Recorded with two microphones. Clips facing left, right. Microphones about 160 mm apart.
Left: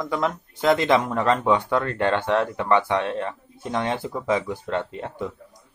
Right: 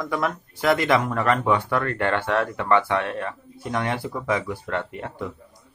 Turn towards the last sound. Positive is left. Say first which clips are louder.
# left 1 dB
turn(degrees=20)  # may be behind; listen again after turning